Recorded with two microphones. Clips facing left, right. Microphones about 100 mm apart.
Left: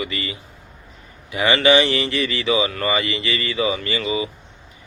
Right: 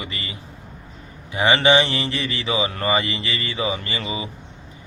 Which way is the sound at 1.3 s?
30° right (ahead or behind).